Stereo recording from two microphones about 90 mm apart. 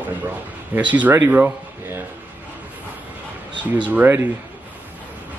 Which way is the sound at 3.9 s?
20° right (ahead or behind).